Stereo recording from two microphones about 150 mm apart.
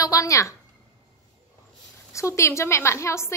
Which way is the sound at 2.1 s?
20° left (ahead or behind).